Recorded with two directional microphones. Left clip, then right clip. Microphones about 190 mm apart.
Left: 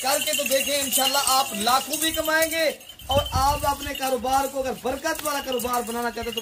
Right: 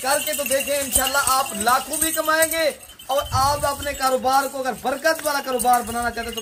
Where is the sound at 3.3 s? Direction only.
40° right (ahead or behind).